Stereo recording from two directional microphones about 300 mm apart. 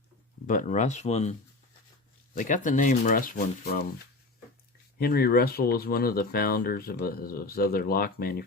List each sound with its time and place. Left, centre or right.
0.4 s speech: left
4.9 s speech: left